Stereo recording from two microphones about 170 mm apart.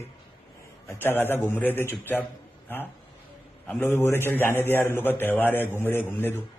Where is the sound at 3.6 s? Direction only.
10° left (ahead or behind).